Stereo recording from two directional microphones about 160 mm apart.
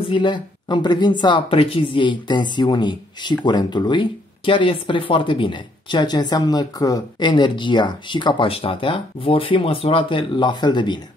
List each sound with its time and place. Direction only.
0.0 s speech: 30° left (ahead or behind)